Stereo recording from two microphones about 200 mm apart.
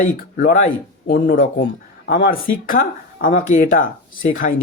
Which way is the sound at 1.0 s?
50° left (ahead or behind).